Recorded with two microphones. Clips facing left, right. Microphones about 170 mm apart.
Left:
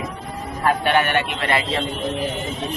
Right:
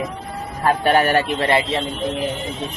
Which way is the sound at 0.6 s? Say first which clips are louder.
Right 2 dB; 35° right (ahead or behind).